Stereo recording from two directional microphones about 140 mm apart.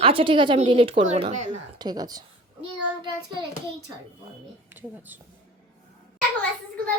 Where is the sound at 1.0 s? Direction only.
55° right (ahead or behind).